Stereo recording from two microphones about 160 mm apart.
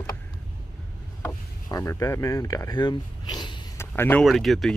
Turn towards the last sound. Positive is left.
turn(degrees=0)  # may be behind; listen again after turning